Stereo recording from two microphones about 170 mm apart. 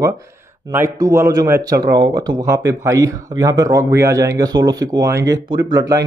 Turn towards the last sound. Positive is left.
turn(degrees=-20)  # may be behind; listen again after turning